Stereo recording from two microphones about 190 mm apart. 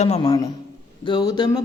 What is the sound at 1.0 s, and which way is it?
Speech, 20° left (ahead or behind).